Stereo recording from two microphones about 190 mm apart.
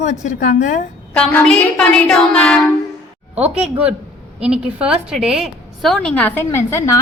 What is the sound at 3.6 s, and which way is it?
A woman's voice, 5° right (ahead or behind).